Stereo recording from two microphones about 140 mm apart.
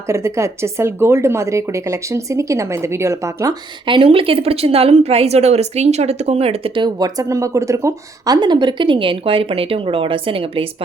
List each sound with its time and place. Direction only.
0.1 s a woman's voice: 20° right (ahead or behind)
3.8 s a woman's voice: 40° right (ahead or behind)